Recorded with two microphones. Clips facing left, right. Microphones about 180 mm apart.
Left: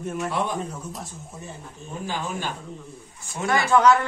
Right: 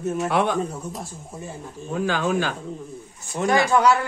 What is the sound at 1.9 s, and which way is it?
Speech, 90° right.